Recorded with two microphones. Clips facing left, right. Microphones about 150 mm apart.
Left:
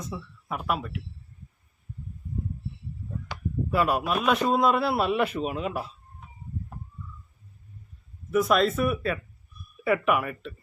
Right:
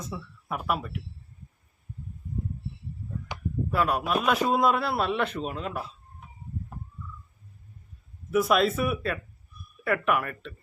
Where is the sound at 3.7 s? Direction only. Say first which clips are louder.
Left 1 dB; 5° left (ahead or behind).